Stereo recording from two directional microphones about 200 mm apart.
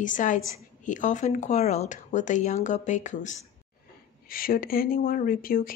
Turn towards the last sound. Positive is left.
turn(degrees=45)  # may be behind; listen again after turning